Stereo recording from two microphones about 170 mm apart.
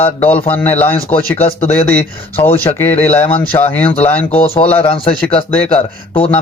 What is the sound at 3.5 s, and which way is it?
Speech, 25° left (ahead or behind).